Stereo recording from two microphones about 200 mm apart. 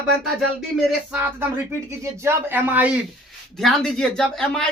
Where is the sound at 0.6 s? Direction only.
5° right (ahead or behind).